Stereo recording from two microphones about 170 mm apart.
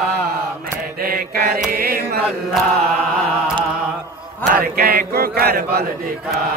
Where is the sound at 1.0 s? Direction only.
60° right (ahead or behind).